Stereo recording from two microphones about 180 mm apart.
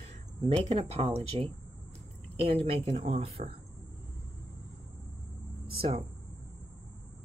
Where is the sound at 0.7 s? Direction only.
35° right (ahead or behind).